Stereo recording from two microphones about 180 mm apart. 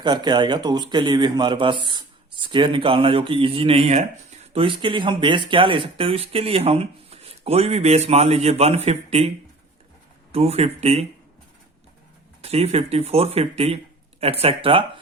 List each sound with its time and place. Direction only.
0.0 s speech: 25° right (ahead or behind)
10.3 s speech: 35° right (ahead or behind)
12.4 s speech: 35° right (ahead or behind)